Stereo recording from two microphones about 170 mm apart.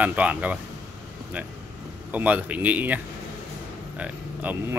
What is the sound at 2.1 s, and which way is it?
Speech, 10° right (ahead or behind).